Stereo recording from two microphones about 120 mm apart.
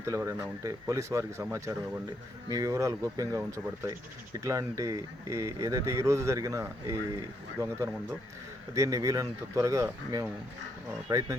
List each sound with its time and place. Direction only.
0.0 s speech: 25° right (ahead or behind)